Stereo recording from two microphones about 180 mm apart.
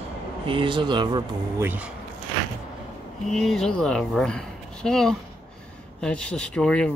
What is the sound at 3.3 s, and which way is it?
Speech, centre (ahead or behind).